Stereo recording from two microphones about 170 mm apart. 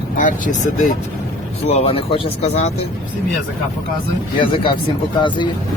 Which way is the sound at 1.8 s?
35° left (ahead or behind).